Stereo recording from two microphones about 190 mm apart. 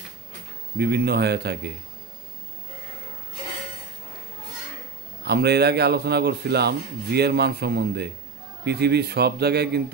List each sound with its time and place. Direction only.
0.7 s a man's voice: 60° right (ahead or behind)
5.2 s a man's voice: 60° right (ahead or behind)